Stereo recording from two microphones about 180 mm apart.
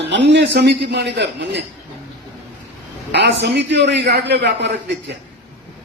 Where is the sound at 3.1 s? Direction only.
70° right (ahead or behind).